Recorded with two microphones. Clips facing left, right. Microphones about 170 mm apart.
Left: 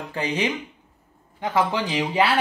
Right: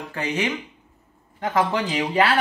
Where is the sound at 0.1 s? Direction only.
20° left (ahead or behind).